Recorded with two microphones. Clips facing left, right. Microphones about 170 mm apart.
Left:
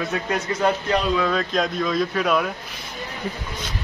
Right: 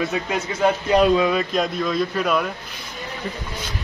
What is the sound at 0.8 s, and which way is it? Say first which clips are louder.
Speech: right 5 dB; 15° right (ahead or behind).